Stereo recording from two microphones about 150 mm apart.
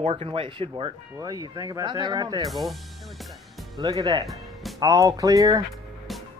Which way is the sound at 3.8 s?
25° right (ahead or behind).